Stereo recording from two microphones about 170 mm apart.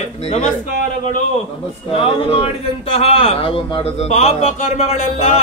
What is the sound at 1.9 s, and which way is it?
Speech, 35° left (ahead or behind).